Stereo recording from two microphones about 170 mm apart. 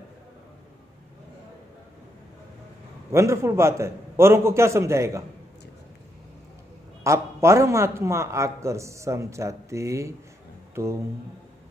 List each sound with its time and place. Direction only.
3.1 s a man's voice: 15° right (ahead or behind)
7.0 s a man's voice: 15° right (ahead or behind)